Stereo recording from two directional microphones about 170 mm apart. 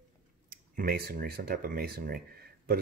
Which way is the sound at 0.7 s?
55° right (ahead or behind).